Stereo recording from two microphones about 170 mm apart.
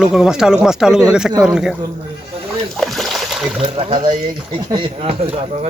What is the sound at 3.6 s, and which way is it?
Speech, 30° right (ahead or behind).